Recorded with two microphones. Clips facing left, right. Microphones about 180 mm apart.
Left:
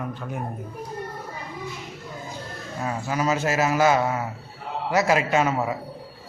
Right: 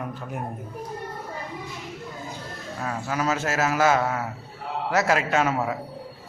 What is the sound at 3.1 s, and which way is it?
A man's voice, centre (ahead or behind).